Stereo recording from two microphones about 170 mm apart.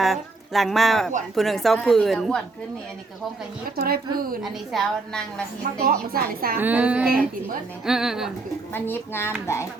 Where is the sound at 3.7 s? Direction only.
65° right (ahead or behind).